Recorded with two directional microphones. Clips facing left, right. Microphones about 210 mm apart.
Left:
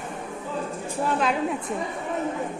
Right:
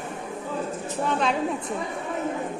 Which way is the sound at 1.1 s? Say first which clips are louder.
Even; 5° left (ahead or behind).